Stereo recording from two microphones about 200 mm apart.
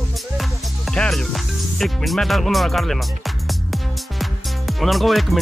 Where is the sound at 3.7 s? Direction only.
Centre (ahead or behind).